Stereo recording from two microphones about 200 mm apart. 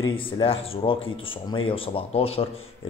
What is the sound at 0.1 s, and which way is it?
Speech, 25° left (ahead or behind).